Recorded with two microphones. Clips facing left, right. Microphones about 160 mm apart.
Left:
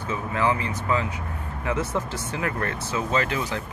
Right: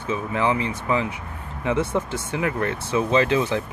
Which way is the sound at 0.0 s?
20° right (ahead or behind).